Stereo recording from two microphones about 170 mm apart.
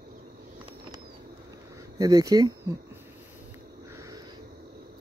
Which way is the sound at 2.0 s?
20° right (ahead or behind).